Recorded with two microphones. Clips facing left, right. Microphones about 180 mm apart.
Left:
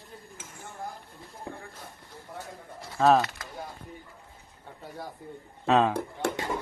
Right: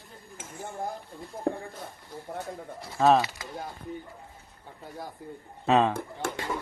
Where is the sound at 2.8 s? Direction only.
Centre (ahead or behind).